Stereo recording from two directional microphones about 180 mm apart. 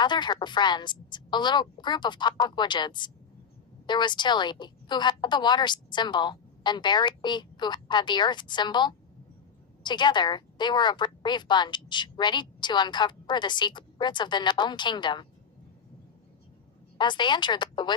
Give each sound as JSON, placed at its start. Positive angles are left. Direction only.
{"t": 0.0, "sound": "a woman's voice", "side_deg": 25}
{"t": 17.0, "sound": "a woman's voice", "side_deg": 25}